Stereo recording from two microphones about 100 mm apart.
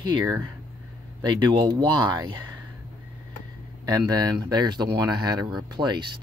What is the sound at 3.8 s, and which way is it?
Speech, 40° right (ahead or behind).